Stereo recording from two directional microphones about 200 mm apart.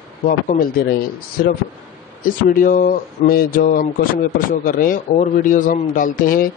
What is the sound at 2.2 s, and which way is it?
A man's voice, 45° left (ahead or behind).